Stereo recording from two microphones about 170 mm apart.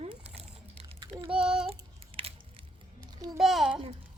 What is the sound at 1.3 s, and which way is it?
Speech, 5° right (ahead or behind).